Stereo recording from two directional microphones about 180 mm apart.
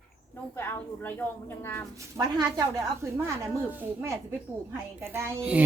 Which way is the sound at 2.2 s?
20° right (ahead or behind).